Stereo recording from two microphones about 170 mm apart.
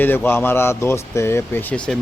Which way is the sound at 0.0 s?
10° left (ahead or behind).